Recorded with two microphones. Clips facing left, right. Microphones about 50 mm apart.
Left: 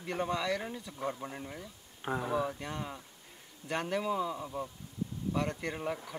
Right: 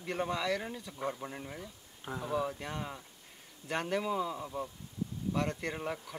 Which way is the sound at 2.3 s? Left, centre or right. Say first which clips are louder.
Right 3 dB; centre.